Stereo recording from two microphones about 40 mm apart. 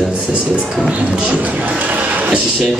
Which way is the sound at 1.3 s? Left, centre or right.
Right.